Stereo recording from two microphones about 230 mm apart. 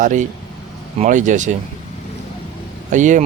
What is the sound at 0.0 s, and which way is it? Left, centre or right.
Speech, right.